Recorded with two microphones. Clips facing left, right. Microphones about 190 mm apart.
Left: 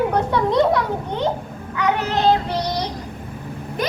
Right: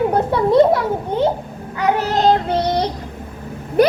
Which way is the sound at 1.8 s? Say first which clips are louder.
Right 3 dB; 40° right (ahead or behind).